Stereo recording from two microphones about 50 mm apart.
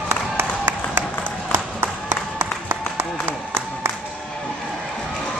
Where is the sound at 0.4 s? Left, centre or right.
Right.